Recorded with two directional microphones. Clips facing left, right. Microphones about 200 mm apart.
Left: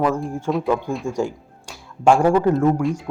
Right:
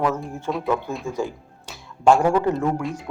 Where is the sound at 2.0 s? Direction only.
10° left (ahead or behind).